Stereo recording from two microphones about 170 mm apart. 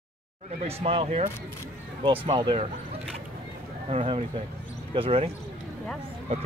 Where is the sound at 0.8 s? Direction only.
35° right (ahead or behind).